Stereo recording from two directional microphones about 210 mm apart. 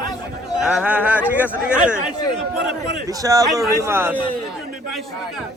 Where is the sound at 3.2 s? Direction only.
15° right (ahead or behind).